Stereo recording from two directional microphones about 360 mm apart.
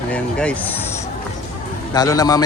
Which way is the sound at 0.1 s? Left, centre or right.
Centre.